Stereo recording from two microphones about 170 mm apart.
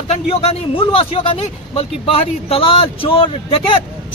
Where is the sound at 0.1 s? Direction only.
35° left (ahead or behind).